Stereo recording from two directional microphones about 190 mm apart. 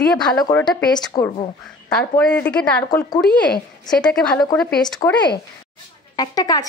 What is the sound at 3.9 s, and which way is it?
Speech, 5° left (ahead or behind).